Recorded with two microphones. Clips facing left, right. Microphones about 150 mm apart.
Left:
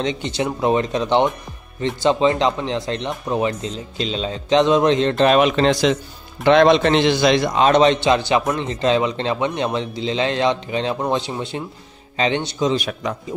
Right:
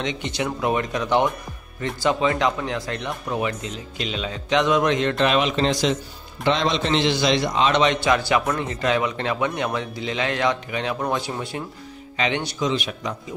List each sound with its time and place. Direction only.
0.0 s a man's voice: 35° left (ahead or behind)
5.4 s speech: 65° left (ahead or behind)
6.4 s a man's voice: 60° left (ahead or behind); by 8.0 s 40° left (ahead or behind)
8.0 s a man's voice: 25° left (ahead or behind)
12.7 s a man's voice: 45° left (ahead or behind)